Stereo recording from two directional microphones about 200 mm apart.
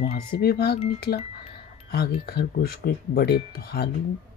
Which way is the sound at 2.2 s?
50° left (ahead or behind).